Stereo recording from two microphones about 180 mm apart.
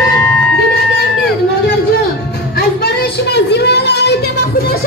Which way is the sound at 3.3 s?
70° left (ahead or behind).